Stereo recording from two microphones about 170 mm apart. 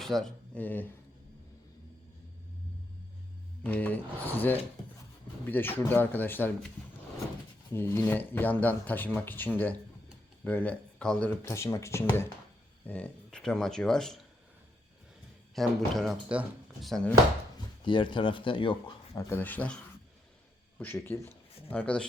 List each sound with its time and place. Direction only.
0.0 s speech: centre (ahead or behind)
3.6 s speech: 10° left (ahead or behind)
7.7 s speech: 15° left (ahead or behind)
11.4 s speech: 15° left (ahead or behind)
15.5 s speech: centre (ahead or behind)
17.8 s speech: 30° left (ahead or behind)
19.1 s speech: 10° left (ahead or behind)